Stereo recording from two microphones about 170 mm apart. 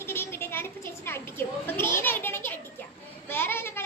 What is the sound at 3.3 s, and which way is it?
Child singing, 15° left (ahead or behind).